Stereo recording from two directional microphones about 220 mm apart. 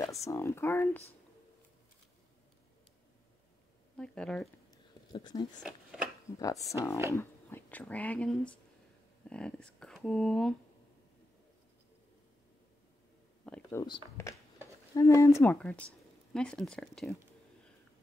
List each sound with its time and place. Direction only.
0.3 s speech: 10° left (ahead or behind)
3.9 s speech: 5° left (ahead or behind)
5.1 s speech: 20° left (ahead or behind)
5.6 s speech: centre (ahead or behind)
6.4 s speech: 15° left (ahead or behind)
13.5 s speech: 10° left (ahead or behind)